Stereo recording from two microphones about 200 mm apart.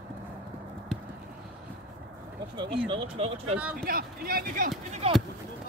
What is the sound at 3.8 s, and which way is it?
Speech, 45° right (ahead or behind).